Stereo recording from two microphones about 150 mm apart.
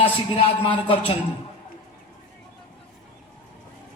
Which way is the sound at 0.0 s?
35° left (ahead or behind).